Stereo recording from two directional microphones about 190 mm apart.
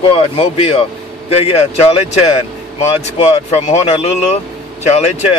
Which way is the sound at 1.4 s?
35° left (ahead or behind).